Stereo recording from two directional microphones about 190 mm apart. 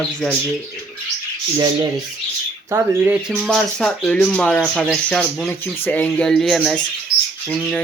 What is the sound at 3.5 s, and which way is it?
Speech, 5° left (ahead or behind).